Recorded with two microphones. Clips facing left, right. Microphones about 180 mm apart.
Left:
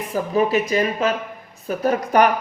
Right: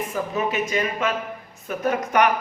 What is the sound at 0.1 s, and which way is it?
Speech, 35° left (ahead or behind).